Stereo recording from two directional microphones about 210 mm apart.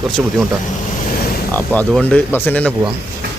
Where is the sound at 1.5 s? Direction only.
5° left (ahead or behind).